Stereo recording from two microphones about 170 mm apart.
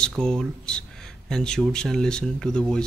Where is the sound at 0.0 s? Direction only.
5° left (ahead or behind).